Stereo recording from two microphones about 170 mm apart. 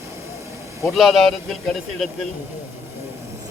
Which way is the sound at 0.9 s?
Centre (ahead or behind).